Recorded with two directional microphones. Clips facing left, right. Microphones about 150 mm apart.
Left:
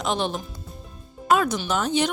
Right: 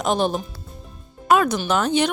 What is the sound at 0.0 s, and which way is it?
Speech, 45° right (ahead or behind).